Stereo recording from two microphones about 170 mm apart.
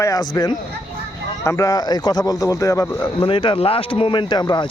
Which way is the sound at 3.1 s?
30° left (ahead or behind).